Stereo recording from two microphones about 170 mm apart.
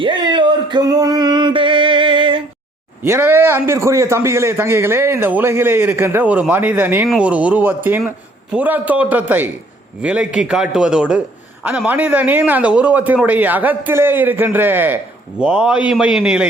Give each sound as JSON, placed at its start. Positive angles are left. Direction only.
{"t": 0.0, "sound": "male singing", "side_deg": -25}
{"t": 3.0, "sound": "a man's voice", "side_deg": -10}